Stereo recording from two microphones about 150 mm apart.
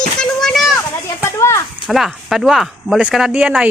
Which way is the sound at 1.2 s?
20° left (ahead or behind).